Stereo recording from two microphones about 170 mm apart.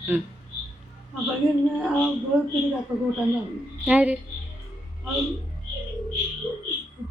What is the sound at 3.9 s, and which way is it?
Speech, 5° right (ahead or behind).